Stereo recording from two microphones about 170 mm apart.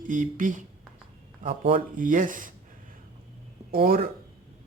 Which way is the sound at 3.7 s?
60° right (ahead or behind).